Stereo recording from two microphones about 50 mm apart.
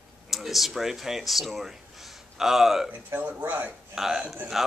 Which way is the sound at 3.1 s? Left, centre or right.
Right.